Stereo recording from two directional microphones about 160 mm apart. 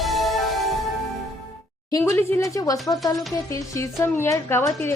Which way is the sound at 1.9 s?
20° left (ahead or behind).